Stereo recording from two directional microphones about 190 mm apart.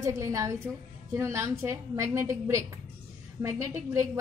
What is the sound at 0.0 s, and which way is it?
A woman's voice, 15° right (ahead or behind).